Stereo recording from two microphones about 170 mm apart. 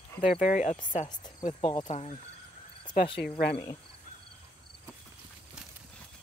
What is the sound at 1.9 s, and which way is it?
Speech, 40° left (ahead or behind).